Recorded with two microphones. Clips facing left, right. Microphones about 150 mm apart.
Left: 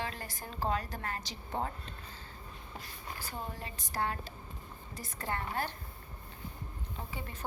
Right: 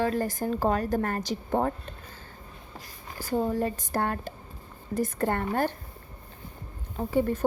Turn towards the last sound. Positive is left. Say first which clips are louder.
# right 17 dB
turn(degrees=-45)  # may be behind; listen again after turning